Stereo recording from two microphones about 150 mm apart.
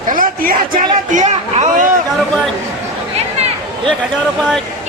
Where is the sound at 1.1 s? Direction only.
50° right (ahead or behind).